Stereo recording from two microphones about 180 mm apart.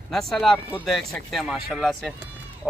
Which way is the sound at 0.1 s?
Centre (ahead or behind).